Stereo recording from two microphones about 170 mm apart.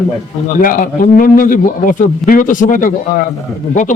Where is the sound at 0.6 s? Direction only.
55° left (ahead or behind).